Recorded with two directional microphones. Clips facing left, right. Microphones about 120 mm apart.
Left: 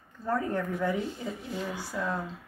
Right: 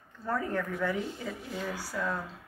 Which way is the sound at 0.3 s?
15° left (ahead or behind).